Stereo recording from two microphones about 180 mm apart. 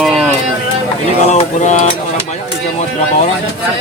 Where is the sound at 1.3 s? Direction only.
40° left (ahead or behind).